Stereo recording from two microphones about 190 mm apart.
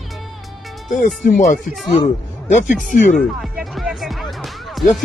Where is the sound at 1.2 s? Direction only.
45° left (ahead or behind).